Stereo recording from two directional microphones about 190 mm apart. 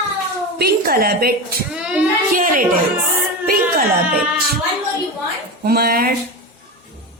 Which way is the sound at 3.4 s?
50° right (ahead or behind).